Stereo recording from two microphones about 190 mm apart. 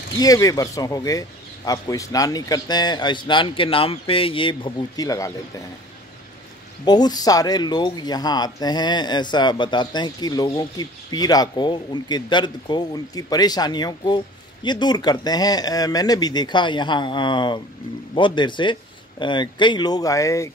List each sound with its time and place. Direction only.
0.2 s speech: 20° left (ahead or behind)
6.8 s speech: 20° left (ahead or behind)